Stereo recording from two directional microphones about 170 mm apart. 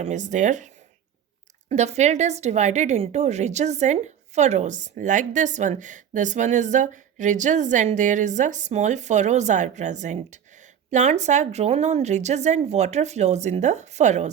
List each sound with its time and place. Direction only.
0.0 s a woman's voice: 45° right (ahead or behind)
1.7 s a woman's voice: 40° right (ahead or behind)